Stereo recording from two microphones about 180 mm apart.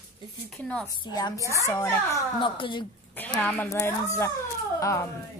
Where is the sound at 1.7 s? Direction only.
15° left (ahead or behind).